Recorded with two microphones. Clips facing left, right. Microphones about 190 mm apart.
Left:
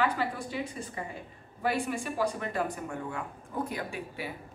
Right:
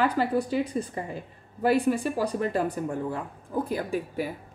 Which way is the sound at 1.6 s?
40° right (ahead or behind).